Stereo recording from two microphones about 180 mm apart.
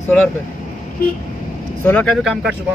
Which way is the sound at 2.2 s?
5° right (ahead or behind).